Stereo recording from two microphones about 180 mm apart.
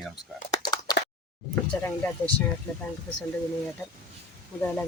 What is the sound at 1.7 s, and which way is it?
Speech, 10° left (ahead or behind).